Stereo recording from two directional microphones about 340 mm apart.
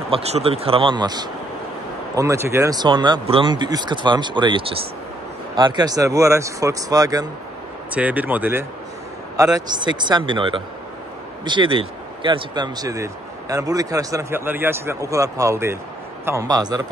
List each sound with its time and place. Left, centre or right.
0.1 s speech: centre